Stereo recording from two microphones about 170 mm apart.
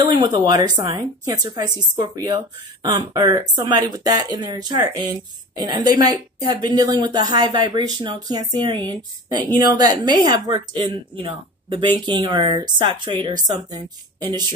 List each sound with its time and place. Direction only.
0.1 s speech: 25° right (ahead or behind)